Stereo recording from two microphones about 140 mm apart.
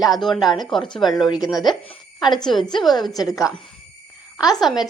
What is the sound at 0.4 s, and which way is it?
Speech, 30° left (ahead or behind).